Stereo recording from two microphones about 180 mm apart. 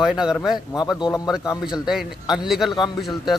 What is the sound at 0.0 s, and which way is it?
Speech, 5° right (ahead or behind).